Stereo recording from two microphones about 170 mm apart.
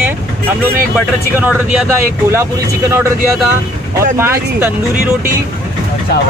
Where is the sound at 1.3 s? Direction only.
10° right (ahead or behind).